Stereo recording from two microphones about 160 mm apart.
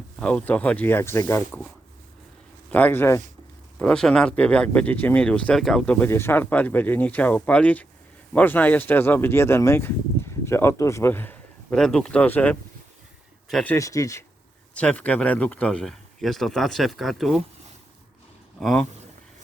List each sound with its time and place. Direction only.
0.2 s speech: 5° left (ahead or behind)
2.6 s speech: 10° left (ahead or behind)
13.7 s speech: 20° left (ahead or behind)
14.8 s speech: 10° left (ahead or behind)
18.6 s speech: centre (ahead or behind)